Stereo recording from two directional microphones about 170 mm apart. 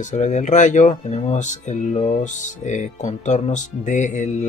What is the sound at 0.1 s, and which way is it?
Speech, 45° left (ahead or behind).